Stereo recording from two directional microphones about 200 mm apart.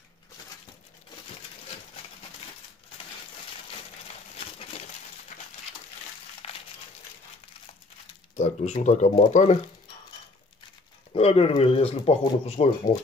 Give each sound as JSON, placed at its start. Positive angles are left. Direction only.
{"t": 4.4, "sound": "a sound", "side_deg": 30}
{"t": 6.4, "sound": "crushing", "side_deg": 30}
{"t": 8.4, "sound": "speech", "side_deg": 35}
{"t": 11.1, "sound": "speech", "side_deg": 30}